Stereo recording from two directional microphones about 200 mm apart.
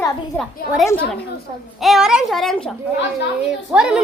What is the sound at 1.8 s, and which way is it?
A woman's voice, centre (ahead or behind).